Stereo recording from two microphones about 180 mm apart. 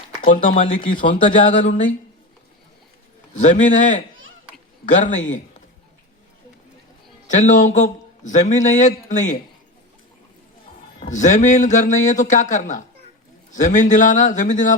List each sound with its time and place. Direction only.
0.2 s speech: 30° left (ahead or behind)
0.9 s a man's voice: 50° left (ahead or behind)
3.3 s a man's voice: 45° left (ahead or behind)
7.3 s a man's voice: 40° left (ahead or behind)
11.0 s a man's voice: 40° left (ahead or behind)